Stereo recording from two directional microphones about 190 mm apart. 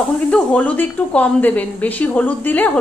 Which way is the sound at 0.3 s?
5° left (ahead or behind).